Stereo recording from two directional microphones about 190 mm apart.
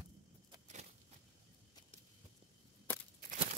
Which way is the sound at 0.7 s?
35° right (ahead or behind).